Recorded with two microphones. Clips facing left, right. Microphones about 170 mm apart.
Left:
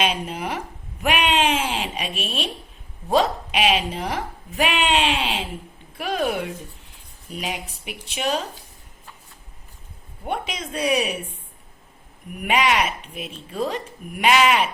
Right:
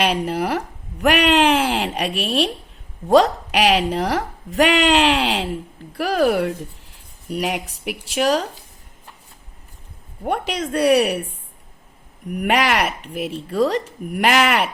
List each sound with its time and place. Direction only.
0.0 s speech: 70° right (ahead or behind)
7.7 s speech: 80° right
10.2 s speech: 70° right (ahead or behind)
12.4 s speech: 70° right (ahead or behind)
14.2 s speech: 65° right (ahead or behind)